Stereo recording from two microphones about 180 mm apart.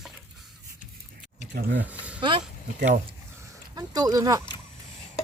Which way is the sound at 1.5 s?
75° right (ahead or behind).